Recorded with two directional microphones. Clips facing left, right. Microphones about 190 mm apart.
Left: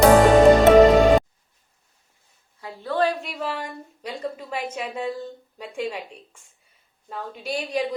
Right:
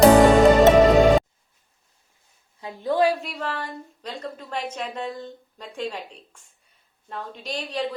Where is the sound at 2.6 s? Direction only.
15° right (ahead or behind).